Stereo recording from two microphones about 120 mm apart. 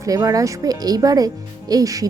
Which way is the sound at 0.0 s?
30° right (ahead or behind).